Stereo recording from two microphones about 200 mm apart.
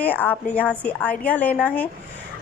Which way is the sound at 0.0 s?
10° left (ahead or behind).